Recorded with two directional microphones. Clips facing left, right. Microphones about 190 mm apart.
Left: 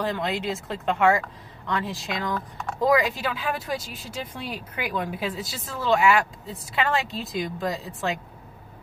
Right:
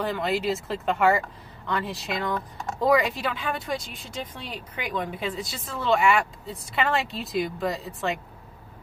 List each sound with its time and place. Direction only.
0.0 s speech: centre (ahead or behind)